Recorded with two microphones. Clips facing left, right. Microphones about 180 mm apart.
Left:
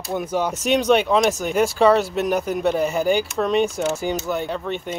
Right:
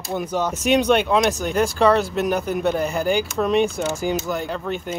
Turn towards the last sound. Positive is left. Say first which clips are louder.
# even
turn(degrees=0)  # may be behind; listen again after turning